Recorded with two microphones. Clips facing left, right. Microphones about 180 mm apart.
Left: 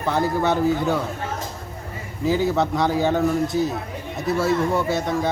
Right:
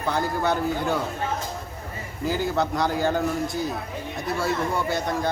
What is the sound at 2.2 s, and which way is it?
A man's voice, centre (ahead or behind).